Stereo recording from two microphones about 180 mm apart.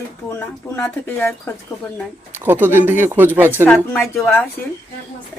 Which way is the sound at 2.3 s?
10° right (ahead or behind).